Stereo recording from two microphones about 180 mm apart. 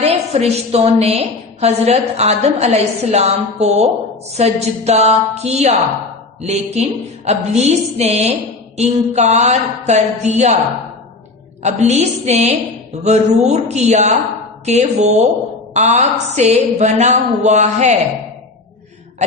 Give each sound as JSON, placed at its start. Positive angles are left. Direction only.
{"t": 0.0, "sound": "a woman's voice", "side_deg": -35}
{"t": 11.6, "sound": "a woman's voice", "side_deg": -40}